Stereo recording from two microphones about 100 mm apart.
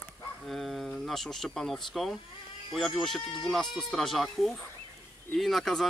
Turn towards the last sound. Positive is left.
turn(degrees=0)  # may be behind; listen again after turning